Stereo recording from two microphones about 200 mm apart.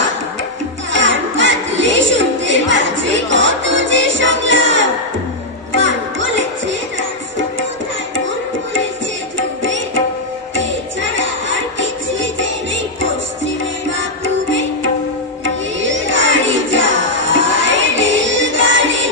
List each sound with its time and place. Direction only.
0.9 s music: 65° right (ahead or behind)
11.1 s music: 70° right (ahead or behind)
15.4 s music: 70° right (ahead or behind)